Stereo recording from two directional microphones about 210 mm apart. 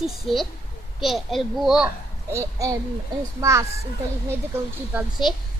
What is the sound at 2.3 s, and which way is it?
A child's voice, 15° right (ahead or behind).